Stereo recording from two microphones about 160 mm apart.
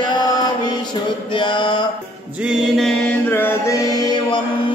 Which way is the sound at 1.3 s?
30° left (ahead or behind).